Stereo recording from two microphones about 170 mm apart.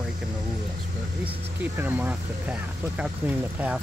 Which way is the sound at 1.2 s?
10° right (ahead or behind).